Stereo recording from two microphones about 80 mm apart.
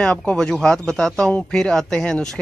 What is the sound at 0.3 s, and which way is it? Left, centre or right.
Speech, centre.